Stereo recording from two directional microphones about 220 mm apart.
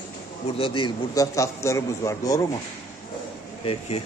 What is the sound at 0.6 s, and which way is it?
A man's voice, 25° left (ahead or behind).